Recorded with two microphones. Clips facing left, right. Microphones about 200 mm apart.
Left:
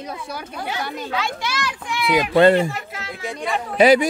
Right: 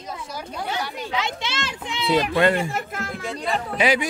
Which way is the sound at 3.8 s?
40° left (ahead or behind).